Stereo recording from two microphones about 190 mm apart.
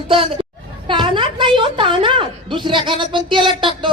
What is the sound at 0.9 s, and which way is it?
Speech, 25° right (ahead or behind).